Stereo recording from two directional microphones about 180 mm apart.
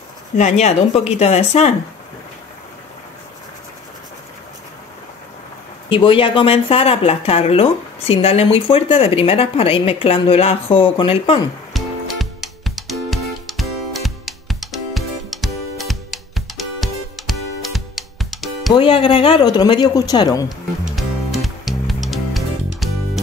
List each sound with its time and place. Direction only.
0.4 s speech: 40° left (ahead or behind)
5.9 s speech: 30° left (ahead or behind)
11.7 s music: centre (ahead or behind)
18.7 s speech: 30° left (ahead or behind)
20.9 s music: centre (ahead or behind)